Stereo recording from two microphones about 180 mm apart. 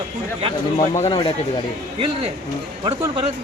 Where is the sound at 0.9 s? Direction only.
30° left (ahead or behind).